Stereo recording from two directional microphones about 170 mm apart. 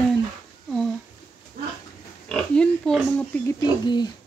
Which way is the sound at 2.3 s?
5° left (ahead or behind).